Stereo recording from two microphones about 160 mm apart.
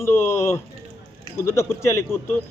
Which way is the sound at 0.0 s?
15° left (ahead or behind).